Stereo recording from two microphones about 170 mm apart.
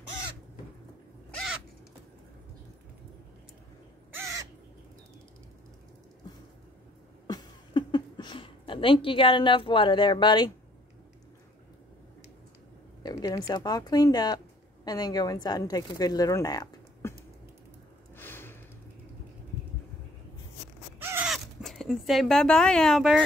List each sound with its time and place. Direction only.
1.3 s crow: centre (ahead or behind)
4.1 s crow: 20° right (ahead or behind)
7.2 s a sound: 25° left (ahead or behind)
13.0 s speech: 20° left (ahead or behind)
18.1 s gasp: 15° left (ahead or behind)
21.0 s crow: 15° right (ahead or behind)
21.3 s speech: centre (ahead or behind)